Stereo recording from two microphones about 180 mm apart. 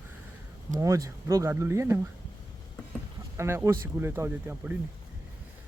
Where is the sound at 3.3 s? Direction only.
15° right (ahead or behind).